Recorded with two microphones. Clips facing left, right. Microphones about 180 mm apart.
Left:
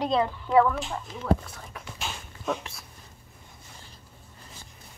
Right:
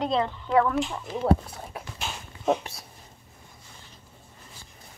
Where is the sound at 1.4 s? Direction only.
35° right (ahead or behind).